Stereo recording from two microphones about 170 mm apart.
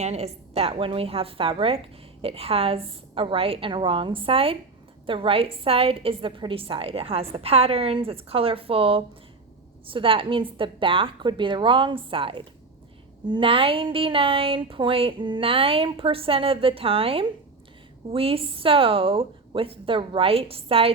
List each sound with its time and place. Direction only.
0.0 s a woman's voice: 40° right (ahead or behind)